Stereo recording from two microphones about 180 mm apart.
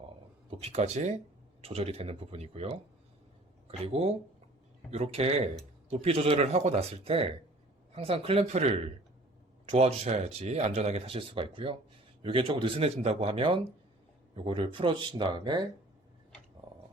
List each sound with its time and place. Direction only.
0.6 s speech: 40° right (ahead or behind)